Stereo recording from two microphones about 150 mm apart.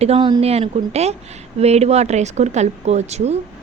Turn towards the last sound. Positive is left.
turn(degrees=-45)  # may be behind; listen again after turning